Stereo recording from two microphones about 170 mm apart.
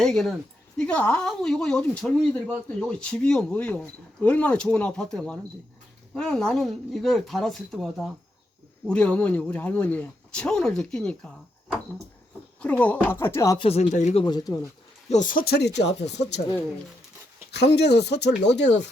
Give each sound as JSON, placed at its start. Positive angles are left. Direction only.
{"t": 0.0, "sound": "speech", "side_deg": 0}
{"t": 12.5, "sound": "speech", "side_deg": 10}
{"t": 13.6, "sound": "speech", "side_deg": 35}
{"t": 14.3, "sound": "speech", "side_deg": 25}
{"t": 15.1, "sound": "speech", "side_deg": 50}
{"t": 17.5, "sound": "speech", "side_deg": 75}